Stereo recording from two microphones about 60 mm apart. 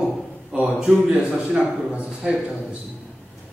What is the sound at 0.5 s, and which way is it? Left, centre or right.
A man's voice, centre.